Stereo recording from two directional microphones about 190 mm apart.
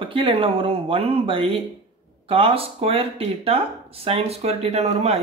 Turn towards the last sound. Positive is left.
turn(degrees=-35)  # may be behind; listen again after turning